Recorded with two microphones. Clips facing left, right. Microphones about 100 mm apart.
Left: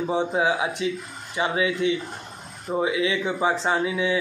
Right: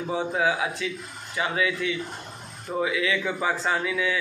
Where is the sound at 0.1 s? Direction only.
25° left (ahead or behind).